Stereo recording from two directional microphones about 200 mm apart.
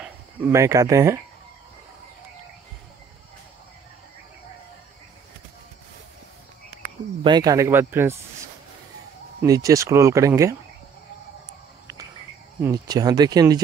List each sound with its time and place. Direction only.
0.0 s speech: 10° right (ahead or behind)
7.2 s speech: 20° right (ahead or behind)
9.4 s speech: 15° right (ahead or behind)
12.6 s speech: 20° right (ahead or behind)